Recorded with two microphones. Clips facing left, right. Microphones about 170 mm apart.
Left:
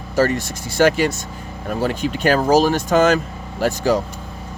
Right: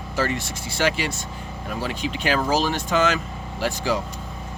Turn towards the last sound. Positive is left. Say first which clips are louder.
# left 6 dB
turn(degrees=45)  # may be behind; listen again after turning